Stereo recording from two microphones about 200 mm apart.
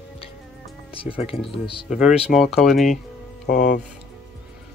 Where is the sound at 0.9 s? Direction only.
25° left (ahead or behind).